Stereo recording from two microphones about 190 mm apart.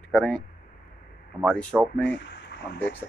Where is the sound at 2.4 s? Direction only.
65° left (ahead or behind).